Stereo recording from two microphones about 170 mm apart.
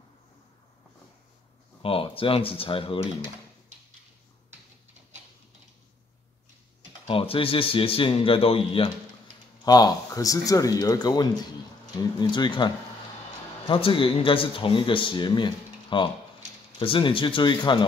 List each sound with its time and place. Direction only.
1.8 s speech: 35° left (ahead or behind)
7.1 s speech: 35° left (ahead or behind)
9.7 s speech: 20° left (ahead or behind)